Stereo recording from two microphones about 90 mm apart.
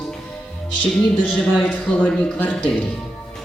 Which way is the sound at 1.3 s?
15° left (ahead or behind).